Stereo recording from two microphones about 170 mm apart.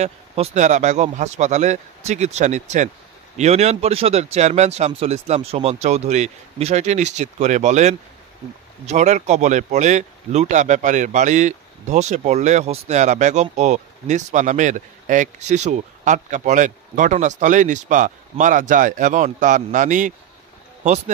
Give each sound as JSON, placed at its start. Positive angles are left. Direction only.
{"t": 0.0, "sound": "speech", "side_deg": -45}